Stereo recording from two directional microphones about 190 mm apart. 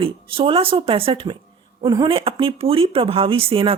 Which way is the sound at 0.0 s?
30° right (ahead or behind).